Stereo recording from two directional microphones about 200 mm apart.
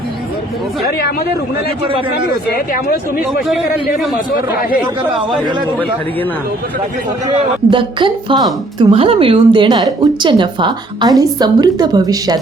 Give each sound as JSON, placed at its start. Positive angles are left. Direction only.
{"t": 2.3, "sound": "speech", "side_deg": 50}
{"t": 3.4, "sound": "a man's voice", "side_deg": 0}
{"t": 7.3, "sound": "a woman's voice", "side_deg": -25}